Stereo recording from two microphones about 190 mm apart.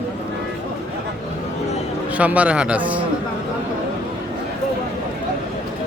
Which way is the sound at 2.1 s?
5° right (ahead or behind).